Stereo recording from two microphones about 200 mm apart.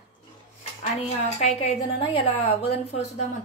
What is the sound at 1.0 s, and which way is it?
Speech, 30° left (ahead or behind).